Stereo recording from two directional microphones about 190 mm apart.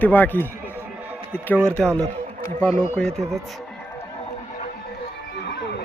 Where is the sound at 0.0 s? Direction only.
10° left (ahead or behind).